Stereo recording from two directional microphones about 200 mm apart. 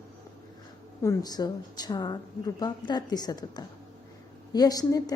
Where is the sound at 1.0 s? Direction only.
15° left (ahead or behind).